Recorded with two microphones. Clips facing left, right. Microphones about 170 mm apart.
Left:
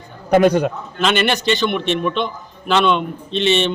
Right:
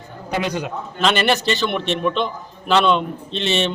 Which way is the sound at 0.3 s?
50° left (ahead or behind).